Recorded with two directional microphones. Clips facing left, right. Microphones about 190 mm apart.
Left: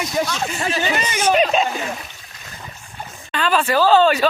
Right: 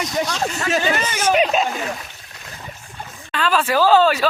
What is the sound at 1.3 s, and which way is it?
Speech, 5° right (ahead or behind).